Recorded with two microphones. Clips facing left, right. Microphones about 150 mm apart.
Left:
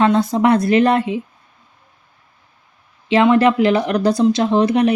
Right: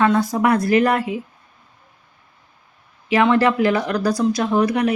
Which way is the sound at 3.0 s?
20° left (ahead or behind).